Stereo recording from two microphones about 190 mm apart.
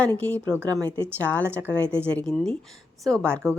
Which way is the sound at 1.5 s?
10° right (ahead or behind).